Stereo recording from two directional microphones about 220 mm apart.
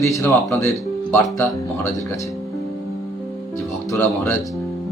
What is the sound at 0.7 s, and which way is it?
Speech, 5° left (ahead or behind).